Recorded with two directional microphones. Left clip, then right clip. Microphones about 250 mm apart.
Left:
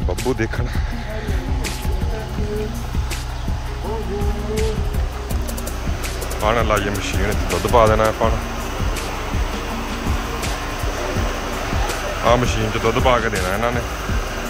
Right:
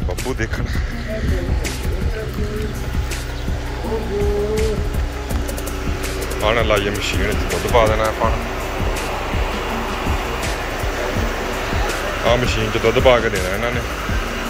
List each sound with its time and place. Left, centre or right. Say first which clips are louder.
6.4 s speech: right 1 dB; centre
7.7 s speech: left 1 dB; left
12.3 s speech: left 1 dB; centre